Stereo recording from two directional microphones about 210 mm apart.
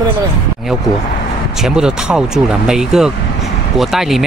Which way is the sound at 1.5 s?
Centre (ahead or behind).